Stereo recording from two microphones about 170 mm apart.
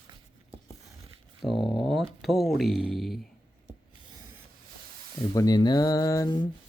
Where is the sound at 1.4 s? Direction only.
Centre (ahead or behind).